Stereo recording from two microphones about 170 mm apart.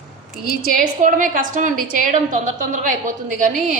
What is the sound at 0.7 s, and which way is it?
A woman's voice, 50° right (ahead or behind).